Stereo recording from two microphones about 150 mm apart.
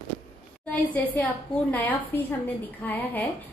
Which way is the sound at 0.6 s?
10° left (ahead or behind).